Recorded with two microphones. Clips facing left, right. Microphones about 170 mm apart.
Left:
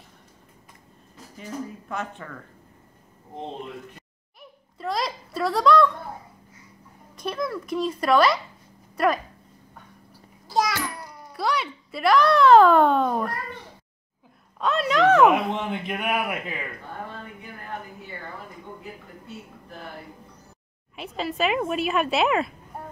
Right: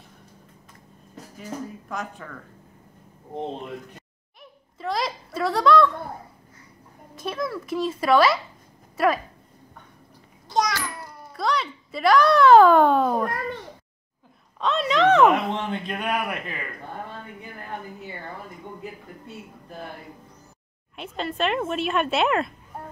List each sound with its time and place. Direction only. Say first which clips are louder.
1.4 s speech: even; centre (ahead or behind)
4.4 s a sound: even; centre (ahead or behind)
7.2 s speech: even; centre (ahead or behind)
11.3 s speech: right 1 dB; centre (ahead or behind)
14.6 s a man's voice: even; centre (ahead or behind)
20.9 s speech: left 1 dB; centre (ahead or behind)